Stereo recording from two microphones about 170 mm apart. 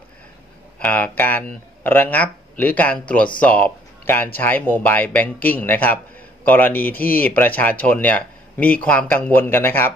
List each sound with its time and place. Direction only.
0.7 s speech: 10° left (ahead or behind)